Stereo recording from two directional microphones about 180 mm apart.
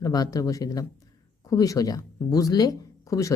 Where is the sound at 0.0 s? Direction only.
20° left (ahead or behind).